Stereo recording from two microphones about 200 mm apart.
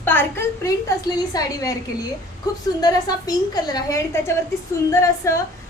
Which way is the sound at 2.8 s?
20° left (ahead or behind).